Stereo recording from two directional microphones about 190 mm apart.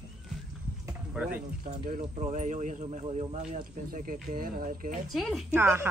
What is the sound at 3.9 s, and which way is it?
Speech, 45° right (ahead or behind).